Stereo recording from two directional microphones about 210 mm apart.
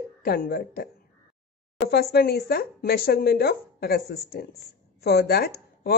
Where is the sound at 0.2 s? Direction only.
45° left (ahead or behind).